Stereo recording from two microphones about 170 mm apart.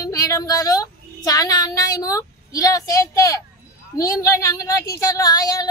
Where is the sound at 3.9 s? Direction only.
20° left (ahead or behind).